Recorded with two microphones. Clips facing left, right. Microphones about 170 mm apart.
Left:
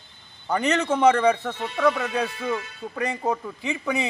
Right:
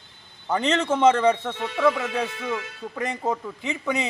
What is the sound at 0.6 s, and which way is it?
Speech, 25° right (ahead or behind).